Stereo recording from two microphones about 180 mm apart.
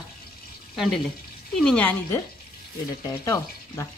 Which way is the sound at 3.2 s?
15° left (ahead or behind).